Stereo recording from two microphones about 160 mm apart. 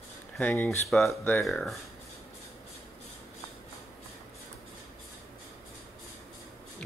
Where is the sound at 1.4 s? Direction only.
Centre (ahead or behind).